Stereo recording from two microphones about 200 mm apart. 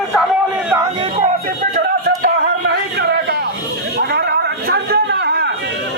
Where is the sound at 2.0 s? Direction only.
55° right (ahead or behind).